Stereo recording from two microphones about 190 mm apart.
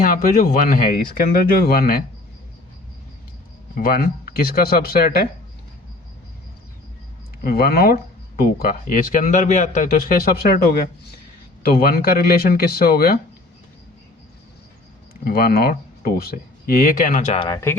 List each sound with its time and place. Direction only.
0.0 s speech: 50° left (ahead or behind)
3.8 s speech: 50° left (ahead or behind)
7.4 s speech: 55° left (ahead or behind)
15.2 s speech: 55° left (ahead or behind); by 17.5 s 35° left (ahead or behind)
17.5 s speech: 15° left (ahead or behind)